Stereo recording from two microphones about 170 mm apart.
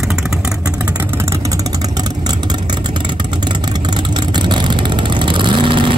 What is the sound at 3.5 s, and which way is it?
Vehicle, 25° right (ahead or behind).